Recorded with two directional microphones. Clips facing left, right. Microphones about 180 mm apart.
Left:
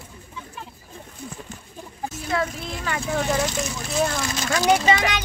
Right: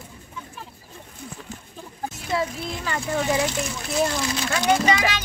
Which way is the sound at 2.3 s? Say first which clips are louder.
Even; 5° right (ahead or behind).